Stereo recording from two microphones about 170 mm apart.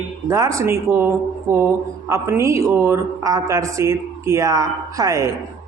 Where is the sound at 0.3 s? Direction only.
20° right (ahead or behind).